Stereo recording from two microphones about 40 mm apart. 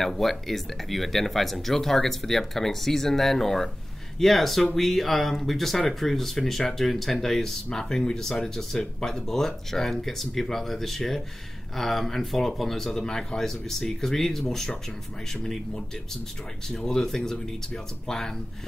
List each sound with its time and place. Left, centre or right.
0.0 s speech: centre
15.4 s speech: centre